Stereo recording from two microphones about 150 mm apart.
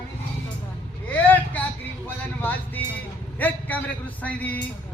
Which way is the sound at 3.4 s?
10° left (ahead or behind).